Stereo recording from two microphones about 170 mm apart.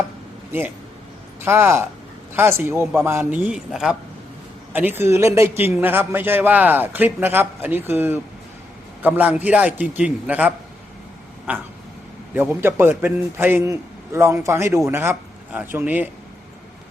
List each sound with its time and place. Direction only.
0.5 s a man's voice: 15° right (ahead or behind)